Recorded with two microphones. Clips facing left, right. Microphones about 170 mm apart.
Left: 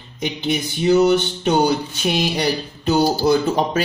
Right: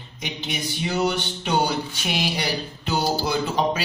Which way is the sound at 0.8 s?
45° left (ahead or behind).